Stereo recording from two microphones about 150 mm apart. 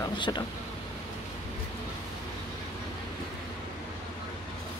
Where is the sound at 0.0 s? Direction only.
30° left (ahead or behind).